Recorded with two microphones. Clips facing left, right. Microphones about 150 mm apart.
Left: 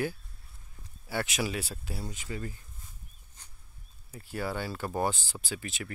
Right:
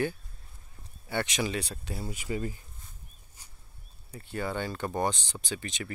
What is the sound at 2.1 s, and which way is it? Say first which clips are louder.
Speech: right 5 dB; 15° right (ahead or behind).